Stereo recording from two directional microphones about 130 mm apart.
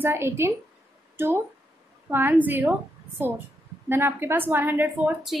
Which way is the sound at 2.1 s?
15° right (ahead or behind).